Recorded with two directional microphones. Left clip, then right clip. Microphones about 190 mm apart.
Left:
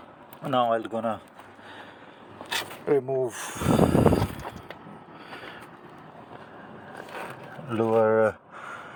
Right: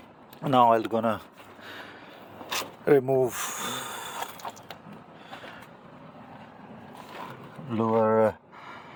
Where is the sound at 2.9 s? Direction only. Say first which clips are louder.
Right 3 dB; 50° right (ahead or behind).